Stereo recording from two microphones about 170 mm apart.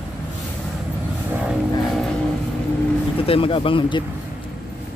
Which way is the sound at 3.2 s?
35° left (ahead or behind).